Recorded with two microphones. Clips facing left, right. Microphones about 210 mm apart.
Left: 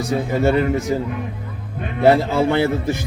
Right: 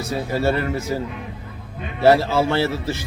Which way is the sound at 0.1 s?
20° left (ahead or behind).